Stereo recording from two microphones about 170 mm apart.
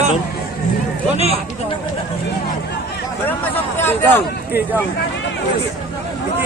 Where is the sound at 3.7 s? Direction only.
10° left (ahead or behind).